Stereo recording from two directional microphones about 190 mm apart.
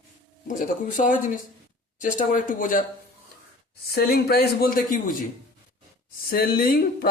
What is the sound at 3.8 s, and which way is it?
A woman's voice, 55° left (ahead or behind).